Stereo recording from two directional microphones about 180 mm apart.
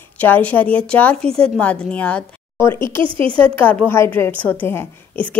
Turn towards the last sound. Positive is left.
turn(degrees=10)  # may be behind; listen again after turning